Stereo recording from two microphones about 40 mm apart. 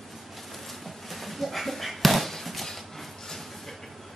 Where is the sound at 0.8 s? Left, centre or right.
Centre.